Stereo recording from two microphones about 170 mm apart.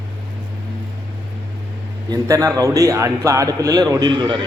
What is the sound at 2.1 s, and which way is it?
A man's voice, 20° right (ahead or behind).